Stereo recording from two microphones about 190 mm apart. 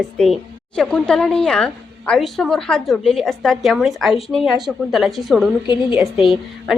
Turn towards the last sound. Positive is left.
turn(degrees=0)  # may be behind; listen again after turning